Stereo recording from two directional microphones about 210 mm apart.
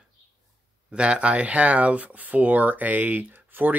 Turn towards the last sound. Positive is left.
turn(degrees=-10)  # may be behind; listen again after turning